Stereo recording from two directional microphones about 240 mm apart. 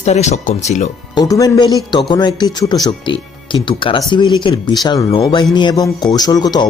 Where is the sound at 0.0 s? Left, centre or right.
Left.